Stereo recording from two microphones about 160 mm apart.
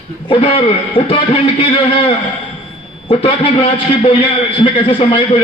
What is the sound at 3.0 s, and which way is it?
A man's voice, 35° left (ahead or behind).